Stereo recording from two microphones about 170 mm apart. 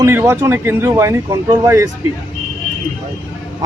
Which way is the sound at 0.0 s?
15° right (ahead or behind).